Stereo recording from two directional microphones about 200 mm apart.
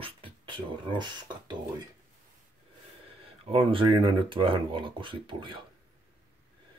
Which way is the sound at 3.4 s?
25° right (ahead or behind).